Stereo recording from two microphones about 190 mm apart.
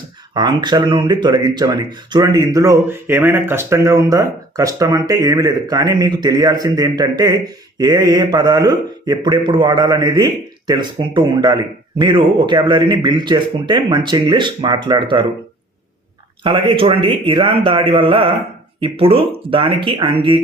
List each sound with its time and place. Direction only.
0.3 s speech: 20° right (ahead or behind)
16.4 s speech: 25° right (ahead or behind)